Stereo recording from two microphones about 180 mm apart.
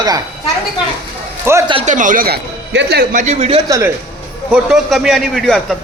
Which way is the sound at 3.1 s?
40° right (ahead or behind).